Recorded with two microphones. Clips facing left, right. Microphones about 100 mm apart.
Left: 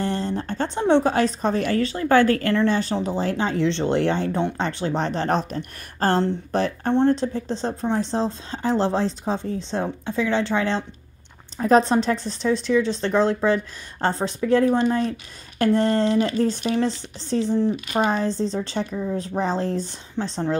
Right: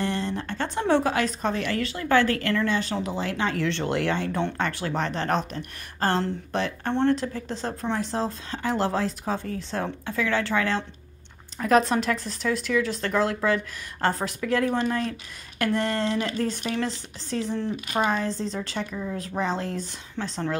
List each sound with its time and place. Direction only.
0.0 s speech: 35° left (ahead or behind)